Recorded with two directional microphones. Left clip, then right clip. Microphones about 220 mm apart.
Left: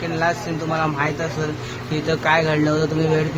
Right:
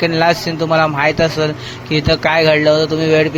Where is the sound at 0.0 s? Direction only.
35° right (ahead or behind).